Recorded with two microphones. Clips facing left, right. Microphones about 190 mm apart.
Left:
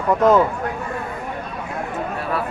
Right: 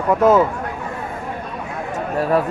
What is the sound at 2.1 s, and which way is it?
Speech, 40° right (ahead or behind).